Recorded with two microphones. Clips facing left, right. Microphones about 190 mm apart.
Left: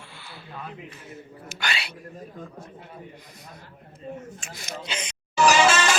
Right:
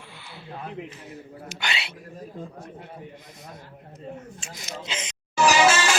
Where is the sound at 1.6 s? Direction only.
25° right (ahead or behind).